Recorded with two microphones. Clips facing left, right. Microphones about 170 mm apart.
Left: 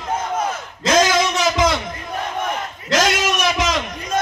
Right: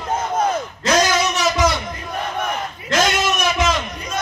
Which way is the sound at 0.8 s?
90° left.